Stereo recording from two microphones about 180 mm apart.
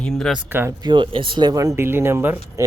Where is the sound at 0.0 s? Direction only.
5° left (ahead or behind).